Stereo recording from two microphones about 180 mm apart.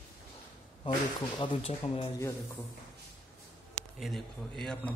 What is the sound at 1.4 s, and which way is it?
Speech, 30° left (ahead or behind).